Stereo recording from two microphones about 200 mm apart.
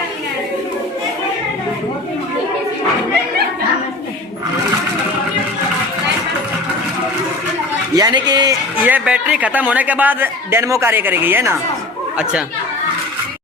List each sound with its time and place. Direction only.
7.9 s speech: 20° right (ahead or behind)
8.9 s a man's voice: 5° right (ahead or behind)